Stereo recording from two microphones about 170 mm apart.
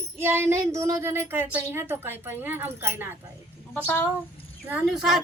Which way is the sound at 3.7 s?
10° left (ahead or behind).